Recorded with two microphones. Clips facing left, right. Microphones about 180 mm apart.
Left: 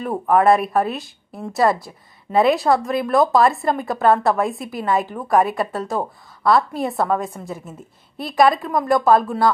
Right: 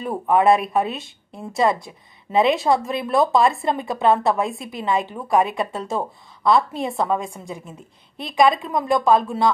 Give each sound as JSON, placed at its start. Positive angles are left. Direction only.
{"t": 0.1, "sound": "a woman's voice", "side_deg": 0}